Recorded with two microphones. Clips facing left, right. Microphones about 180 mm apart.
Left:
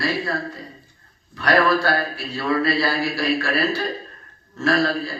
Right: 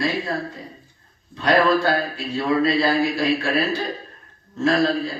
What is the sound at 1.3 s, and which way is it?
A man's voice, 20° right (ahead or behind).